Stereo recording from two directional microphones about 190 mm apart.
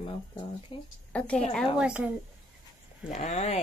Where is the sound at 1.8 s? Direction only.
5° right (ahead or behind).